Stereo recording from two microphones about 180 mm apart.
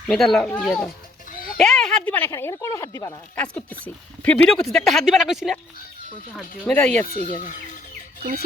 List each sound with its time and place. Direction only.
0.1 s speech: centre (ahead or behind)
1.3 s a sound: 50° left (ahead or behind)
1.5 s speech: 5° left (ahead or behind)
6.7 s speech: 5° left (ahead or behind)
7.1 s speech: 50° left (ahead or behind)
8.2 s speech: 55° right (ahead or behind)